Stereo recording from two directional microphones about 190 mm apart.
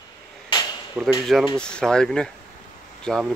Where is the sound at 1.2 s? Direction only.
Centre (ahead or behind).